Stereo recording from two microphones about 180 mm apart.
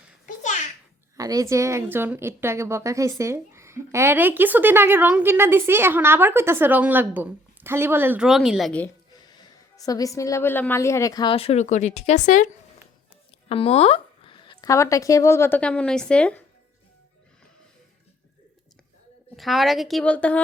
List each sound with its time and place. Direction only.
1.1 s a woman's voice: 20° right (ahead or behind); by 8.9 s 5° left (ahead or behind)
9.1 s a woman's voice: 20° left (ahead or behind); by 12.5 s 45° left (ahead or behind)
13.5 s speech: 30° left (ahead or behind); by 16.4 s 5° left (ahead or behind)
19.4 s a woman's voice: centre (ahead or behind)